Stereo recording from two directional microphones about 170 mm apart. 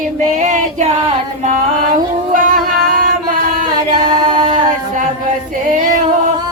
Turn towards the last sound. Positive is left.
turn(degrees=-30)  # may be behind; listen again after turning